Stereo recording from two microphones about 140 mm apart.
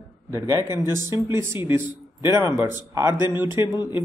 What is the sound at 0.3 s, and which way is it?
A man's voice, 25° right (ahead or behind).